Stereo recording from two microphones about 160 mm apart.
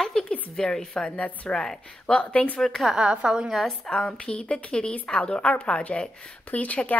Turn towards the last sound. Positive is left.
turn(degrees=10)  # may be behind; listen again after turning